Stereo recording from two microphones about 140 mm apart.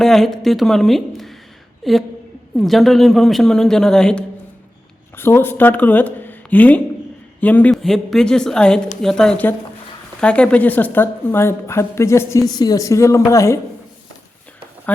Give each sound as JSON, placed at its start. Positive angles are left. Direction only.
{"t": 0.0, "sound": "a woman's voice", "side_deg": 0}
{"t": 5.1, "sound": "a woman's voice", "side_deg": 15}
{"t": 14.9, "sound": "speech", "side_deg": 10}